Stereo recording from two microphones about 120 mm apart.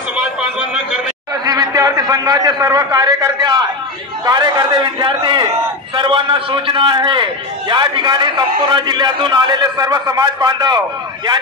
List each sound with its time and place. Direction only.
1.3 s a man's voice: 30° right (ahead or behind)